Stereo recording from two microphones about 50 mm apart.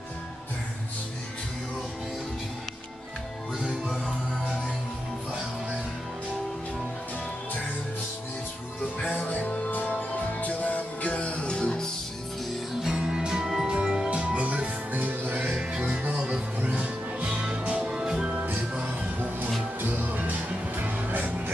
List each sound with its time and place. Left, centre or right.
3.5 s music: centre
9.1 s music: left
12.8 s music: centre; by 15.0 s right
15.0 s music: right
15.3 s music: right
15.9 s music: right
16.2 s music: right
17.3 s music: right
18.4 s music: right